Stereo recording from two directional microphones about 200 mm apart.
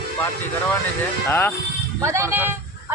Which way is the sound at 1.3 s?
10° left (ahead or behind).